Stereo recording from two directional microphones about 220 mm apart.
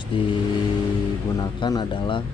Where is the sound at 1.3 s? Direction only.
15° left (ahead or behind).